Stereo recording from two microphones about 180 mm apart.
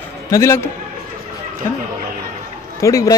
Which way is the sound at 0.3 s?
15° left (ahead or behind).